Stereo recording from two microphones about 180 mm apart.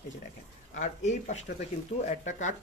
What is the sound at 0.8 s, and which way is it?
Speech, 40° left (ahead or behind).